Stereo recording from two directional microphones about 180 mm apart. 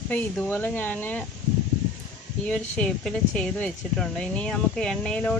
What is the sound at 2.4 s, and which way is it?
Speech, 5° left (ahead or behind).